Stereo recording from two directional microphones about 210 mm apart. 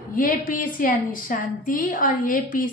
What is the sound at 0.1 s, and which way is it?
A woman's voice, 40° left (ahead or behind).